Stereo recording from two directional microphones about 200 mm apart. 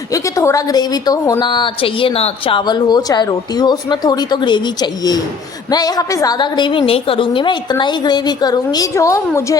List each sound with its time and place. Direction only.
0.1 s a woman's voice: 15° left (ahead or behind)